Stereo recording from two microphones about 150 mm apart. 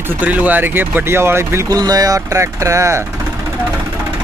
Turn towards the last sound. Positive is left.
turn(degrees=-20)  # may be behind; listen again after turning